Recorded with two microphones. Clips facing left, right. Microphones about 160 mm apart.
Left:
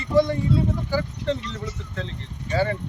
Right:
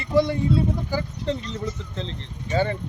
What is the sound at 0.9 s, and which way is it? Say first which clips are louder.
Speech: left 1 dB; 15° right (ahead or behind).